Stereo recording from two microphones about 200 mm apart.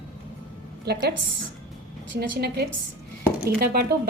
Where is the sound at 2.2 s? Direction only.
50° right (ahead or behind).